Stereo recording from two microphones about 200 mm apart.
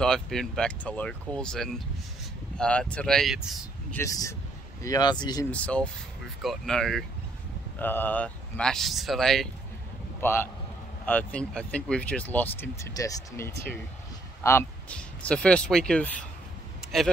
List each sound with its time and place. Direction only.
0.0 s speech: centre (ahead or behind)
3.9 s speech: 15° left (ahead or behind)
5.5 s speech: 5° left (ahead or behind)
10.2 s speech: 10° left (ahead or behind)